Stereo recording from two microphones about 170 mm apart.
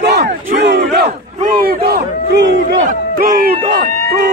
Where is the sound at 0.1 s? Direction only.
75° right (ahead or behind).